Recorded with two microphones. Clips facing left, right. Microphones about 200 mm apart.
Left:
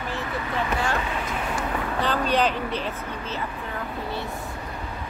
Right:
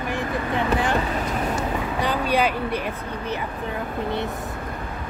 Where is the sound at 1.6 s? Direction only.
10° right (ahead or behind).